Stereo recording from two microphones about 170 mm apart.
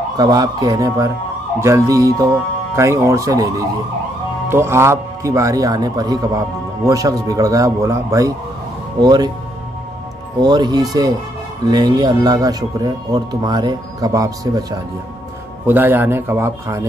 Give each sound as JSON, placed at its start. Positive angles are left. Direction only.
{"t": 0.2, "sound": "speech", "side_deg": -20}
{"t": 10.4, "sound": "speech", "side_deg": -25}
{"t": 15.6, "sound": "a man's voice", "side_deg": -10}